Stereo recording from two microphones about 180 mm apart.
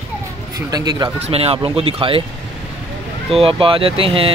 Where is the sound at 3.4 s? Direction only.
30° right (ahead or behind).